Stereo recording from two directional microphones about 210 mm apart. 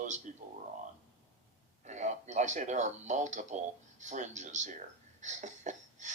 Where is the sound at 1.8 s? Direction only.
35° right (ahead or behind).